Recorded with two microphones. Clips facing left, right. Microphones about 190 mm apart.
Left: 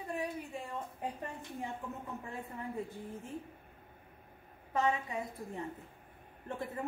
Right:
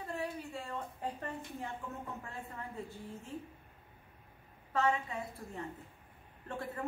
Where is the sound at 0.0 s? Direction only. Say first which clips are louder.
Left 1 dB; 15° left (ahead or behind).